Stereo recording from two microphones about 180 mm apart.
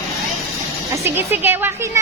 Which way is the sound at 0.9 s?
15° right (ahead or behind).